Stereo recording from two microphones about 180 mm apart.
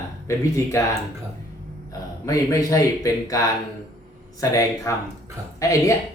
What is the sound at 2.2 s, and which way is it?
Speech, 20° left (ahead or behind).